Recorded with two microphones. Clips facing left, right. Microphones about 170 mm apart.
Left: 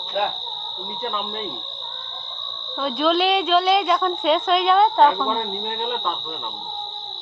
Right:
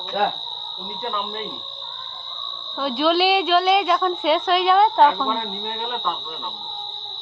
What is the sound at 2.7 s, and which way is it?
A woman's voice, 5° right (ahead or behind).